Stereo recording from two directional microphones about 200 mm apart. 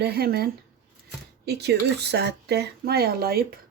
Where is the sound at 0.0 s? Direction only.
50° right (ahead or behind).